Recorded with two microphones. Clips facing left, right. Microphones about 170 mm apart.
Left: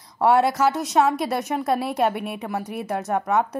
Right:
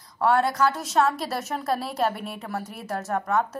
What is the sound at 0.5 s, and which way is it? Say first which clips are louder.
Speech: left 3 dB; 20° left (ahead or behind).